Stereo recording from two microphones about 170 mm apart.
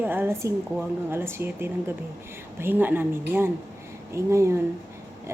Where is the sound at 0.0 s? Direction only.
10° right (ahead or behind).